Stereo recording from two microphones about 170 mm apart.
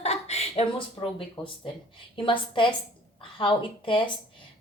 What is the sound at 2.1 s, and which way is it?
A woman's voice, 30° left (ahead or behind).